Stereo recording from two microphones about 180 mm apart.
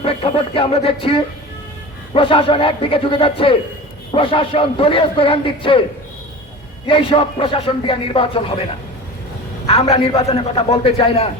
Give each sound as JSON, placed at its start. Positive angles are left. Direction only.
{"t": 0.0, "sound": "a man's voice", "side_deg": 30}
{"t": 6.8, "sound": "speech", "side_deg": 30}
{"t": 9.6, "sound": "a man's voice", "side_deg": 35}